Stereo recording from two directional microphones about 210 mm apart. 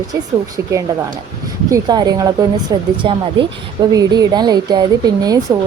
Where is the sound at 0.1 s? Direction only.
15° right (ahead or behind).